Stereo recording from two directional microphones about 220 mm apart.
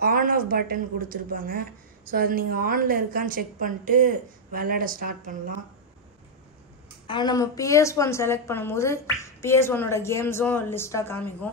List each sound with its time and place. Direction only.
0.0 s speech: 40° right (ahead or behind)
7.1 s a woman's voice: 20° left (ahead or behind)